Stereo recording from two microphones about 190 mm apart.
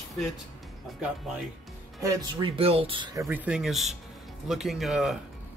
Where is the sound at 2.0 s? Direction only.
15° right (ahead or behind).